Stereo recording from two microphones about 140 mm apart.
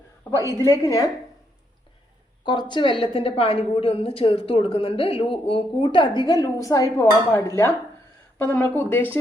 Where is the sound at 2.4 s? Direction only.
35° left (ahead or behind).